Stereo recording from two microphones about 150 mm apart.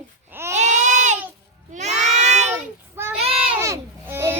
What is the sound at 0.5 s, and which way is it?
Baby cry, 50° right (ahead or behind).